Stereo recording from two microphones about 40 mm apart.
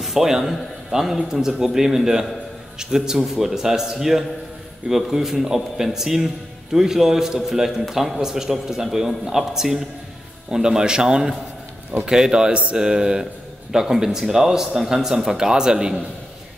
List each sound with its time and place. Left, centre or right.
0.0 s speech: centre